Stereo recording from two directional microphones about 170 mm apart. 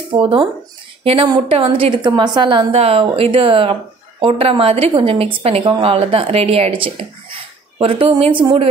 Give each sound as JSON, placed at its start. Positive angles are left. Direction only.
{"t": 0.1, "sound": "a woman's voice", "side_deg": -30}